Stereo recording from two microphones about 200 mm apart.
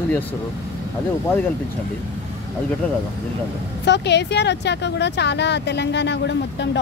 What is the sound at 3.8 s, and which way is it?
Speech, 60° left (ahead or behind).